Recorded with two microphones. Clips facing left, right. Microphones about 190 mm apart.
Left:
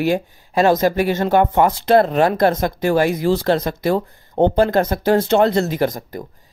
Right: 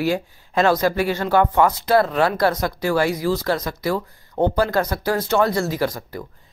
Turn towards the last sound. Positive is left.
turn(degrees=20)  # may be behind; listen again after turning